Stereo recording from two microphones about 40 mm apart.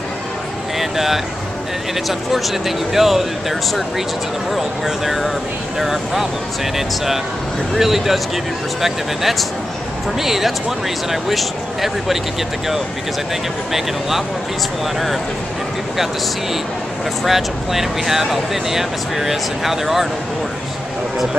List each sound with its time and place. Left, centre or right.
0.7 s speech: centre
13.7 s speech: centre
17.2 s speech: centre